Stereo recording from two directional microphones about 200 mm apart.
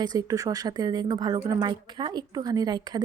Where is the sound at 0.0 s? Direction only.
20° right (ahead or behind).